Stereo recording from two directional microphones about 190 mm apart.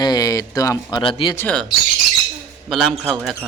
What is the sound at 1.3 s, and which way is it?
Speech, 5° left (ahead or behind).